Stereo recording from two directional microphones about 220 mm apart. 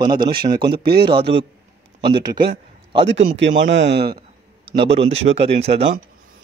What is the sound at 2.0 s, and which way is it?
Speech, 20° right (ahead or behind).